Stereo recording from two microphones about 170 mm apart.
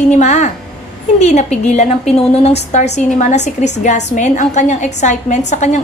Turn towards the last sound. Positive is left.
turn(degrees=45)  # may be behind; listen again after turning